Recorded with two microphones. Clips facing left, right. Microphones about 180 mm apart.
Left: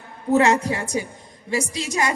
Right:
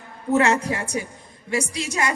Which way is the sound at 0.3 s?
30° left (ahead or behind).